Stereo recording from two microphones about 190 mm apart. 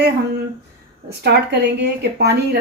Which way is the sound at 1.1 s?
60° right (ahead or behind).